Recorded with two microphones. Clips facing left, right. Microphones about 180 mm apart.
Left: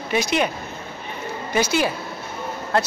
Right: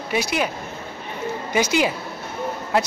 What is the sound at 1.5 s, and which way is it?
Speech, 15° right (ahead or behind).